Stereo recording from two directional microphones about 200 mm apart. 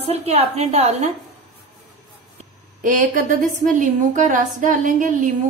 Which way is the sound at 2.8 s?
40° right (ahead or behind).